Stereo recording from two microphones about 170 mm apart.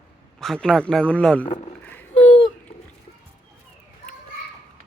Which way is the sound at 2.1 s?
35° left (ahead or behind).